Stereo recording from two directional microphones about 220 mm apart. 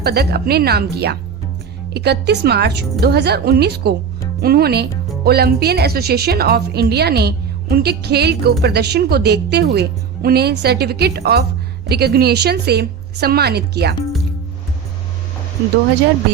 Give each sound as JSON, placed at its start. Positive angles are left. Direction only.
{"t": 0.0, "sound": "speech", "side_deg": -45}